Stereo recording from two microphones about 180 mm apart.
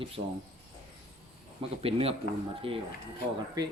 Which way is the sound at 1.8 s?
35° right (ahead or behind).